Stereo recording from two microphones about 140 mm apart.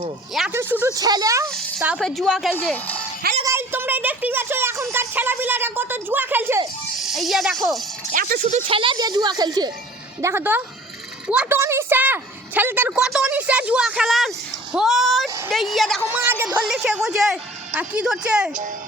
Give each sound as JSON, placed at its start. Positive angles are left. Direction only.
{"t": 0.5, "sound": "speech", "side_deg": -15}
{"t": 0.9, "sound": "speech", "side_deg": -25}
{"t": 1.5, "sound": "a sound", "side_deg": 5}
{"t": 2.0, "sound": "a woman's voice", "side_deg": 5}
{"t": 3.4, "sound": "speech", "side_deg": -15}
{"t": 7.0, "sound": "speech", "side_deg": 0}
{"t": 8.1, "sound": "a sound", "side_deg": -85}
{"t": 8.6, "sound": "a woman's voice", "side_deg": -40}
{"t": 16.2, "sound": "speech", "side_deg": -15}
{"t": 16.6, "sound": "a woman's voice", "side_deg": -5}